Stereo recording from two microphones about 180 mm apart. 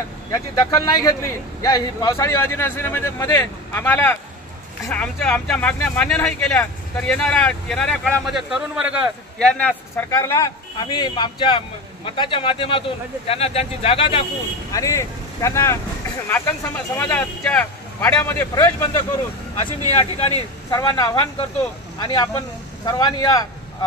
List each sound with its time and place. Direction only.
0.3 s speech: 20° left (ahead or behind)
14.7 s speech: 20° left (ahead or behind)
19.9 s speech: 35° left (ahead or behind)
20.7 s speech: 20° left (ahead or behind)